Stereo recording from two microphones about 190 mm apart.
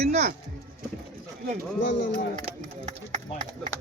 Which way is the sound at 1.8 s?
65° left (ahead or behind).